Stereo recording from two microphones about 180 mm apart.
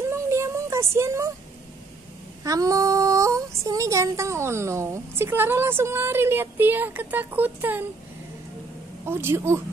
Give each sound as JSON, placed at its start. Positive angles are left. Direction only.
{"t": 0.0, "sound": "a sound", "side_deg": -15}
{"t": 2.4, "sound": "female singing", "side_deg": -20}
{"t": 9.0, "sound": "female singing", "side_deg": -15}